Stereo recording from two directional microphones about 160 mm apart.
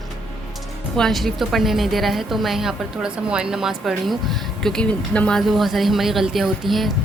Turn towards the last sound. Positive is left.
turn(degrees=0)  # may be behind; listen again after turning